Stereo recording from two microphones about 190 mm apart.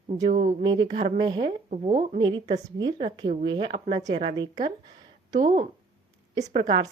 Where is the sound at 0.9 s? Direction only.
35° right (ahead or behind).